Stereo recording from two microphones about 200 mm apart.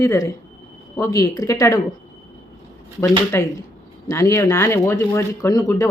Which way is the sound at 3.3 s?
10° left (ahead or behind).